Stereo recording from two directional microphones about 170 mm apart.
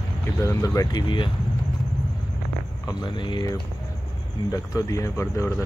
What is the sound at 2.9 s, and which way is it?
Speech, 25° left (ahead or behind).